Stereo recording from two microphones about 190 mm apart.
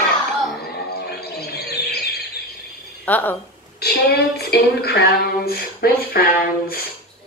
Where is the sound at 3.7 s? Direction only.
55° left (ahead or behind).